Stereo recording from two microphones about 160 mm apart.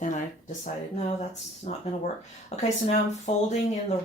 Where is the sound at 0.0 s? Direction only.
50° left (ahead or behind).